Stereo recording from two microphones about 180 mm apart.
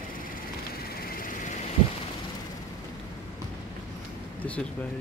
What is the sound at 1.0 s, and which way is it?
Vehicle, 50° left (ahead or behind).